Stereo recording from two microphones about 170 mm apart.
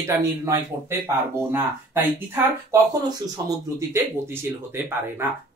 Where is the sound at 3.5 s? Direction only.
15° right (ahead or behind).